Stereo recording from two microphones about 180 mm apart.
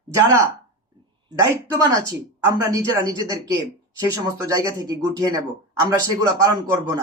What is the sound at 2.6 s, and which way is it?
Speech, 20° right (ahead or behind).